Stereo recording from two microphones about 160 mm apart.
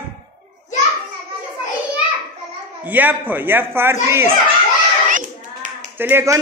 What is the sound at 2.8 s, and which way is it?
A man's voice, 10° right (ahead or behind).